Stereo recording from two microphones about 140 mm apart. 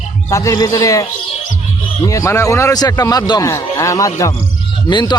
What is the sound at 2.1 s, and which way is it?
A man's voice, 20° left (ahead or behind).